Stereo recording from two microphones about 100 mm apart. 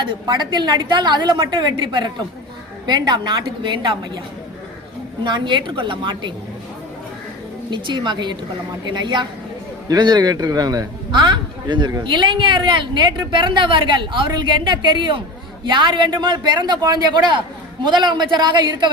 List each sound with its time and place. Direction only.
0.0 s a woman's voice: 50° right (ahead or behind)
5.2 s a woman's voice: 50° right (ahead or behind)
7.7 s a woman's voice: 50° right (ahead or behind)